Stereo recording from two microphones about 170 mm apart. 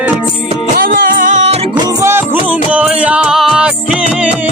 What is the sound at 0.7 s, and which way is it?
Music, 55° right (ahead or behind).